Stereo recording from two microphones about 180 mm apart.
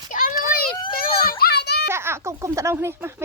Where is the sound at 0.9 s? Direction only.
55° left (ahead or behind).